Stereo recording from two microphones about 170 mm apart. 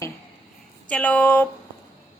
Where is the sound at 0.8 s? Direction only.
10° left (ahead or behind).